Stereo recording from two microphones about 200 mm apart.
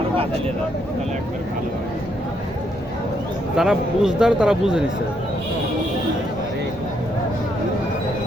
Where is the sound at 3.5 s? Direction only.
5° right (ahead or behind).